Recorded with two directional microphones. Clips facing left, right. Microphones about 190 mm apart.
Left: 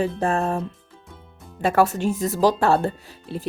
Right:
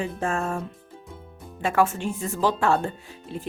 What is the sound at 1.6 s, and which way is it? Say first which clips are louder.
A woman's voice: left 4 dB; 40° left (ahead or behind).